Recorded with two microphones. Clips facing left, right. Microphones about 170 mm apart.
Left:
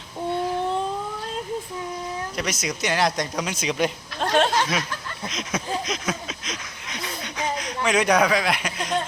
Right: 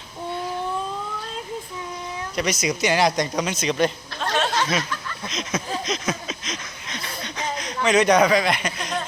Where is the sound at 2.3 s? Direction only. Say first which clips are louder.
Right 9 dB; centre (ahead or behind).